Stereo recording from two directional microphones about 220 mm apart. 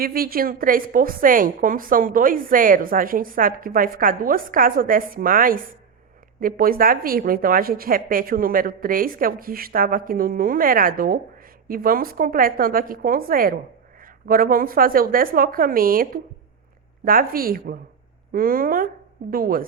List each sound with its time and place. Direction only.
0.0 s a woman's voice: 40° right (ahead or behind)